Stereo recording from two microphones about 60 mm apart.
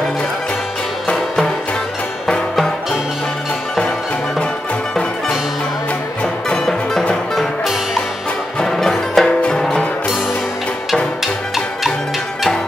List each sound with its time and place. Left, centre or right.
1.1 s music: centre
2.5 s music: centre
6.2 s music: centre
8.5 s music: centre